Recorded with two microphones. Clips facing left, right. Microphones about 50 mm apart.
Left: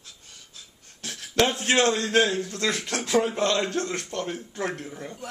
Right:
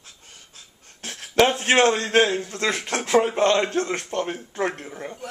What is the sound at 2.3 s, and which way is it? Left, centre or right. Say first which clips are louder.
Speech: right 2 dB; right.